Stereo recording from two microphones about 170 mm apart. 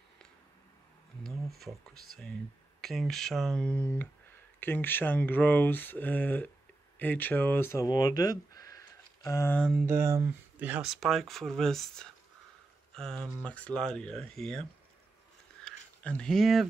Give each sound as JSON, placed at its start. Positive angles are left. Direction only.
{"t": 1.2, "sound": "speech", "side_deg": 0}
{"t": 9.6, "sound": "speech", "side_deg": 0}
{"t": 9.8, "sound": "speech", "side_deg": -15}
{"t": 15.6, "sound": "a sound", "side_deg": 5}